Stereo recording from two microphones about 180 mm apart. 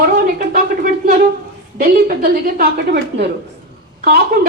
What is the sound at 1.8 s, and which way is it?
A woman's voice, 55° right (ahead or behind).